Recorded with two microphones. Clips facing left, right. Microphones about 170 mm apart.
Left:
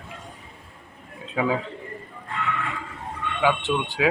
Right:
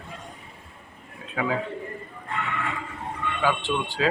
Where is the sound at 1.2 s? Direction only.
20° left (ahead or behind).